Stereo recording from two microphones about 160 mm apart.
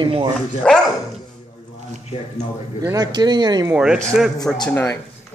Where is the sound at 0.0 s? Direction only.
30° right (ahead or behind).